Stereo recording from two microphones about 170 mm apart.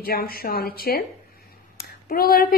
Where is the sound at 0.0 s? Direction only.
60° left (ahead or behind).